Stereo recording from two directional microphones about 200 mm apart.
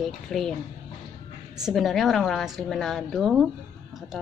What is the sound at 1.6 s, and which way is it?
A woman's voice, centre (ahead or behind).